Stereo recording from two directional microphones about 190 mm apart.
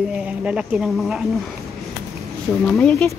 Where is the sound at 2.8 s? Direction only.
5° left (ahead or behind).